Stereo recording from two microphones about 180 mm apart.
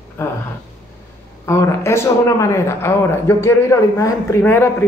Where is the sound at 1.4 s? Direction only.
15° left (ahead or behind).